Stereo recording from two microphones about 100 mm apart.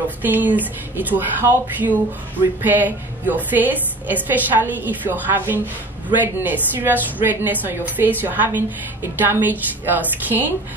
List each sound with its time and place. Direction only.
0.2 s a woman's voice: 15° right (ahead or behind)